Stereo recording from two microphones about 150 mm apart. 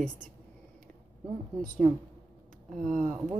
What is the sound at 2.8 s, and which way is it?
Speech, 55° right (ahead or behind).